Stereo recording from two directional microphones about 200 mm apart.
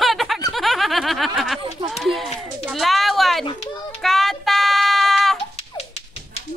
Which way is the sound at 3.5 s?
25° left (ahead or behind).